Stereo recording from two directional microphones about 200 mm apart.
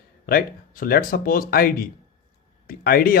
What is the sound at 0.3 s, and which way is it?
Speech, 50° left (ahead or behind).